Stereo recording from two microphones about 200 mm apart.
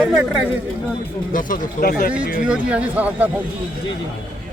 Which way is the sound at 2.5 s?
5° right (ahead or behind).